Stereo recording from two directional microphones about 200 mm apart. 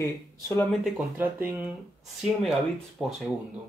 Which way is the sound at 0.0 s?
15° left (ahead or behind).